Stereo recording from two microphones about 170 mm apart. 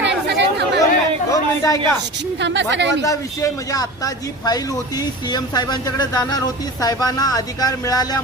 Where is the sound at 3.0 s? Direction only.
20° left (ahead or behind).